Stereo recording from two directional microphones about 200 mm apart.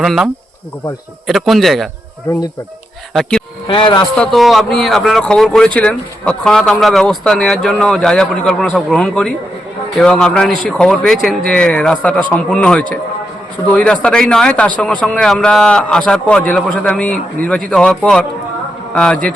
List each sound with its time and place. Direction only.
0.0 s speech: centre (ahead or behind)
1.3 s speech: centre (ahead or behind)
3.1 s speech: 5° left (ahead or behind)
3.7 s a man's voice: 25° left (ahead or behind)
4.2 s speech: centre (ahead or behind)